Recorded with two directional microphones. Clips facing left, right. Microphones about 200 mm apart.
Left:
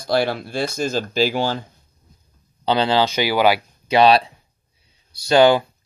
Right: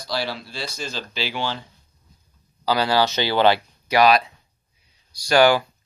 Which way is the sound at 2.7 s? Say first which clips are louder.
Left 2 dB; 20° left (ahead or behind).